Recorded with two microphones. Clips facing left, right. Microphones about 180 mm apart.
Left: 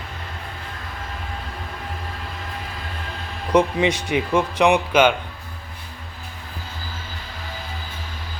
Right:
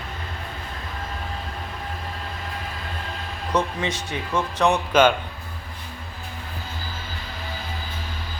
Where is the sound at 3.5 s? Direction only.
10° left (ahead or behind).